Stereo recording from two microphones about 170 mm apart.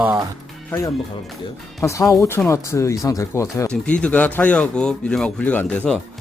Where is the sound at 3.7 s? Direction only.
5° left (ahead or behind).